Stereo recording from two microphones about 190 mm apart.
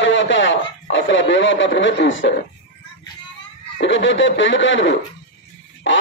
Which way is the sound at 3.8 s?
75° left (ahead or behind).